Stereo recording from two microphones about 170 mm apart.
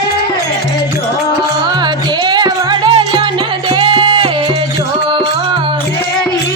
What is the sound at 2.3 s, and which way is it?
Music, 25° right (ahead or behind).